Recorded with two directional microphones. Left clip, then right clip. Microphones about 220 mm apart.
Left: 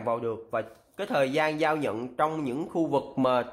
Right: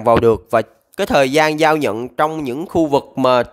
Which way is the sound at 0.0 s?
45° right (ahead or behind).